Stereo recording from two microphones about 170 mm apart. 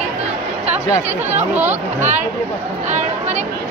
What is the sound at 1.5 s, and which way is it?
Speech, 10° right (ahead or behind).